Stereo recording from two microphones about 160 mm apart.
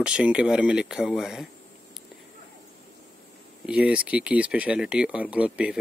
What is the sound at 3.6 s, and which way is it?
Speech, 5° right (ahead or behind).